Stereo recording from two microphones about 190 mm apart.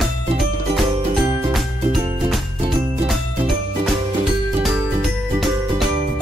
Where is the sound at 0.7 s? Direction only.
Centre (ahead or behind).